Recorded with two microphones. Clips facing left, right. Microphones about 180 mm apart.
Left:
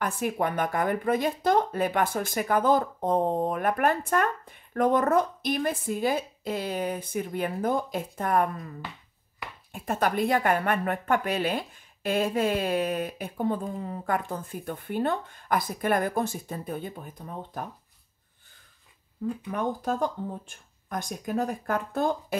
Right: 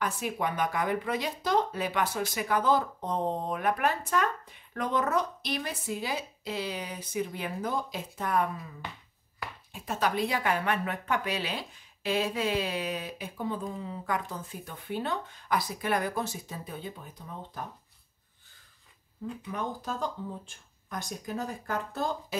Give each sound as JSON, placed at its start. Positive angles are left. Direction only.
{"t": 0.0, "sound": "speech", "side_deg": 50}
{"t": 19.2, "sound": "speech", "side_deg": 55}